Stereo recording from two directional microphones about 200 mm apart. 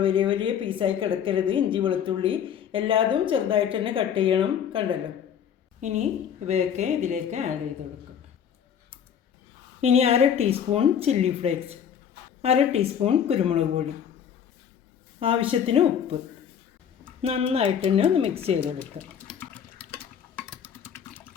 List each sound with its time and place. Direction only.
0.0 s a woman's voice: 25° right (ahead or behind)
9.8 s speech: 30° right (ahead or behind)
15.2 s a woman's voice: 25° right (ahead or behind)
17.2 s a woman's voice: 30° right (ahead or behind)
18.8 s water: 5° left (ahead or behind)
20.4 s typing: centre (ahead or behind)